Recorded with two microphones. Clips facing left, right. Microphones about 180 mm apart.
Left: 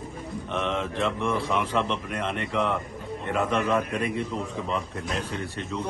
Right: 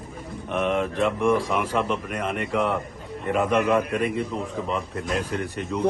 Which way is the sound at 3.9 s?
Centre (ahead or behind).